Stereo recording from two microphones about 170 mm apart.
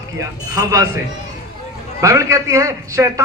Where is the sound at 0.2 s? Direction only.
20° right (ahead or behind).